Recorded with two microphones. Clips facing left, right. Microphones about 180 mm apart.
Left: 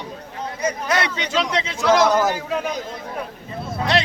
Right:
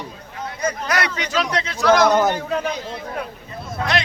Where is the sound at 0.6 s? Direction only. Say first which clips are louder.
Left 1 dB; 25° left (ahead or behind).